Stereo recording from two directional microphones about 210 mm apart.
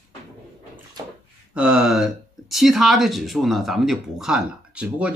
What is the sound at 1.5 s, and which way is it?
Speech, 5° right (ahead or behind).